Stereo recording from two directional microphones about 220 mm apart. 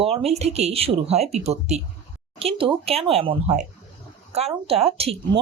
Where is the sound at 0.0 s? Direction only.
25° right (ahead or behind).